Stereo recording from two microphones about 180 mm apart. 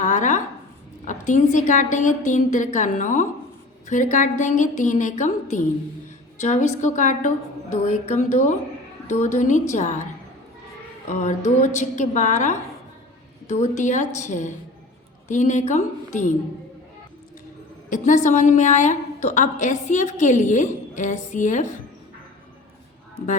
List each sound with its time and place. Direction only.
0.0 s a sound: 45° left (ahead or behind)
1.0 s a woman's voice: 45° left (ahead or behind)
11.1 s a woman's voice: 40° left (ahead or behind)
17.8 s a woman's voice: 45° left (ahead or behind)